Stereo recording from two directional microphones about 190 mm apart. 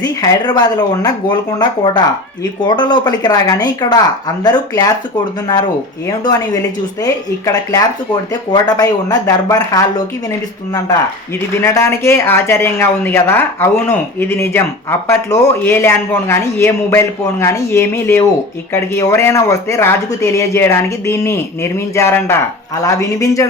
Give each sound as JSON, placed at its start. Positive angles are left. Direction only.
{"t": 0.0, "sound": "a woman's voice", "side_deg": 20}
{"t": 6.1, "sound": "a woman's voice", "side_deg": 20}
{"t": 11.6, "sound": "speech", "side_deg": 15}